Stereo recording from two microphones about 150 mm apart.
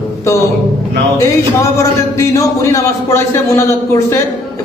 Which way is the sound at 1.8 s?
20° left (ahead or behind).